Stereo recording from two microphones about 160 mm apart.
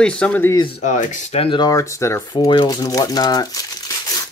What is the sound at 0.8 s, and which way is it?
Speech, 50° left (ahead or behind).